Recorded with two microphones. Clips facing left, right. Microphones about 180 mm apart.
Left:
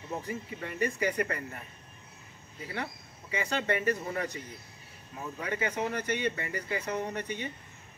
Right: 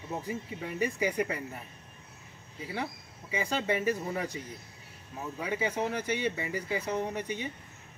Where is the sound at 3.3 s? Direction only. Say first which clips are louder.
Even; 10° right (ahead or behind).